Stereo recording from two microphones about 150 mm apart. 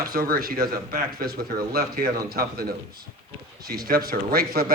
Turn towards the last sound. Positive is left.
turn(degrees=-90)